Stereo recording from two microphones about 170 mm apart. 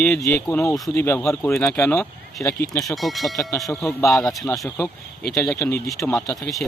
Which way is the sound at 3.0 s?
Centre (ahead or behind).